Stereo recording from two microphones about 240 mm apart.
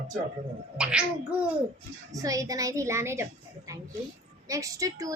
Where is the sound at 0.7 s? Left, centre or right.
Centre.